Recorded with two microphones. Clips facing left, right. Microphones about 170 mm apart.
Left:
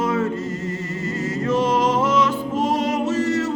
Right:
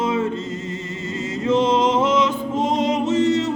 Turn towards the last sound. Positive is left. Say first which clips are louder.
# right 2 dB
turn(degrees=-20)  # may be behind; listen again after turning